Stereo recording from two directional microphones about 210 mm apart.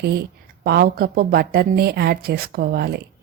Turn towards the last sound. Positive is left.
turn(degrees=-50)  # may be behind; listen again after turning